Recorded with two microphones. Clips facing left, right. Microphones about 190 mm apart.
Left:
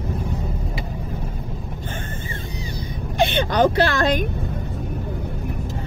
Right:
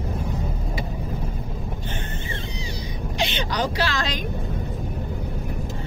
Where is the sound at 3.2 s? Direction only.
55° left (ahead or behind).